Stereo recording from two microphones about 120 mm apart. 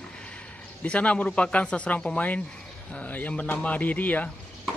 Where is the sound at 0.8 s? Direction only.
10° left (ahead or behind).